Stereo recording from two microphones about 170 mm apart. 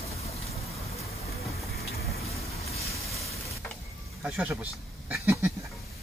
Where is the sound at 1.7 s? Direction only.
65° left (ahead or behind).